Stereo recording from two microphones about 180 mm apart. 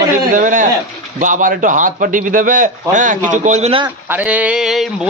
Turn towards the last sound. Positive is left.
turn(degrees=0)  # may be behind; listen again after turning